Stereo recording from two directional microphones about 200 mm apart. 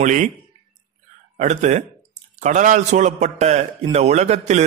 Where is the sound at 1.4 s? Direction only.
35° right (ahead or behind).